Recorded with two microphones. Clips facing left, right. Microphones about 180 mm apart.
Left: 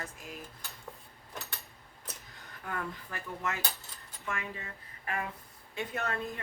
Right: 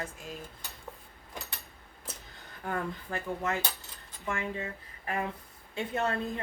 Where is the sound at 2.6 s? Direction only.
30° right (ahead or behind).